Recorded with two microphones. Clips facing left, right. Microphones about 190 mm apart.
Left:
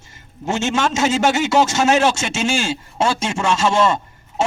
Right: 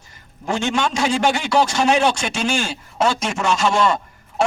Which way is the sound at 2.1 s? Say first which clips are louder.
Left 1 dB; 25° left (ahead or behind).